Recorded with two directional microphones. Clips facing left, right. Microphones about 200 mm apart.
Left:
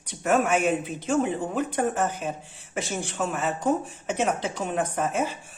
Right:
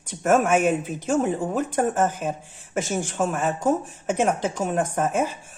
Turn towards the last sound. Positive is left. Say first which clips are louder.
# right 3 dB
turn(degrees=-45)  # may be behind; listen again after turning